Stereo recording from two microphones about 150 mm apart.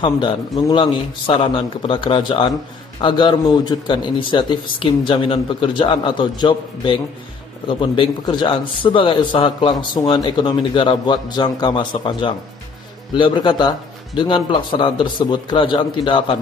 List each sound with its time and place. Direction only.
0.0 s a man's voice: 35° left (ahead or behind)